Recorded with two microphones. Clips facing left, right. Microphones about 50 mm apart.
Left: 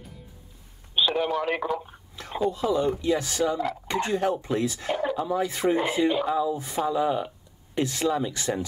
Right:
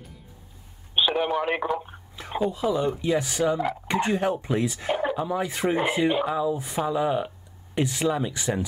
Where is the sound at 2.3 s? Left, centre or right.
Centre.